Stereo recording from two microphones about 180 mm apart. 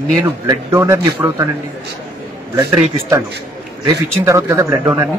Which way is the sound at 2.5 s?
15° right (ahead or behind).